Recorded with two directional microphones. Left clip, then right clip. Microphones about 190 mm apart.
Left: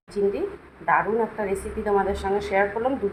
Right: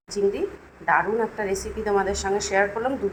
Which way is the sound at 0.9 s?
Centre (ahead or behind).